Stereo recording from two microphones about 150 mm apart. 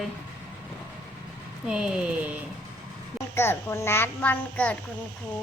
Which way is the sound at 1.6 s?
5° right (ahead or behind).